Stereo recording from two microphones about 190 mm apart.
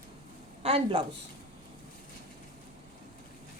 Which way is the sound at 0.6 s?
30° right (ahead or behind).